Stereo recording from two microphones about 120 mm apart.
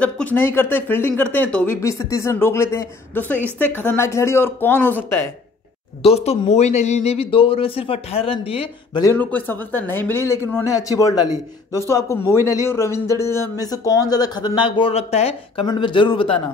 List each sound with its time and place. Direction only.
0.0 s speech: 15° left (ahead or behind)
1.8 s a man's voice: 25° left (ahead or behind)
6.0 s speech: 55° left (ahead or behind)
9.1 s a man's voice: 15° left (ahead or behind); by 15.6 s 60° left (ahead or behind)
15.6 s speech: 40° left (ahead or behind)